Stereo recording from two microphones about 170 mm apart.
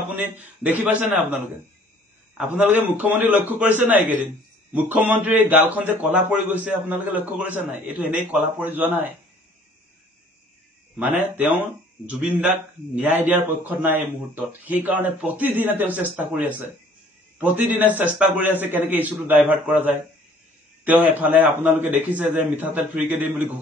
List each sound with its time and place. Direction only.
0.1 s a man's voice: 10° right (ahead or behind)
2.5 s a man's voice: 10° right (ahead or behind)
11.0 s a man's voice: 5° right (ahead or behind)